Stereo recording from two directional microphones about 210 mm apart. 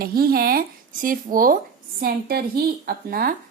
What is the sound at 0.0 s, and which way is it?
A woman's voice, 45° right (ahead or behind).